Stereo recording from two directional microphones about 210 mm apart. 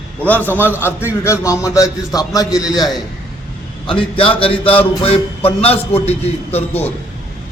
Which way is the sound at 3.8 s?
25° left (ahead or behind).